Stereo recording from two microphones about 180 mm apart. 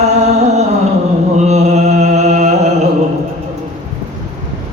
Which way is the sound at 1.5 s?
40° right (ahead or behind).